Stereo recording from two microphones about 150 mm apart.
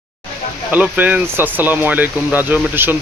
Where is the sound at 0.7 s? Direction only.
10° right (ahead or behind).